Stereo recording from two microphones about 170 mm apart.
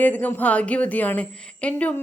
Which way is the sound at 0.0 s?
10° left (ahead or behind).